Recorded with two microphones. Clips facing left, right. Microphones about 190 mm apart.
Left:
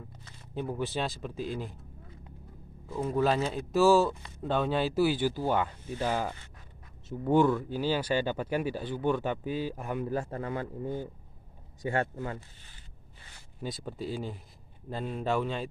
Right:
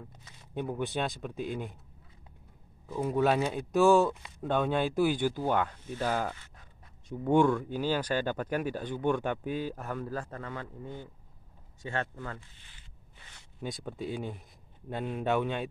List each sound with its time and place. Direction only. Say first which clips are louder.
0.2 s speech: even; centre (ahead or behind)
2.9 s speech: even; centre (ahead or behind)
9.5 s speech: left 1 dB; 50° right (ahead or behind)
9.8 s speech: left 3 dB; 15° left (ahead or behind)
10.1 s a man's voice: left 5 dB; 25° left (ahead or behind)
12.4 s speech: left 4 dB; 40° left (ahead or behind)
13.6 s speech: even; 5° left (ahead or behind)